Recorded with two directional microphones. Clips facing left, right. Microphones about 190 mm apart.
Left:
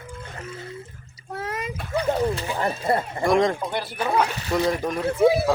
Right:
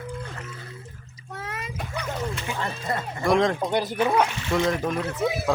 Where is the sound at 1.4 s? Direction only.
30° left (ahead or behind).